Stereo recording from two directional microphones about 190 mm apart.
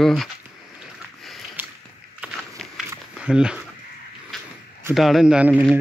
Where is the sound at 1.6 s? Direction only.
10° right (ahead or behind).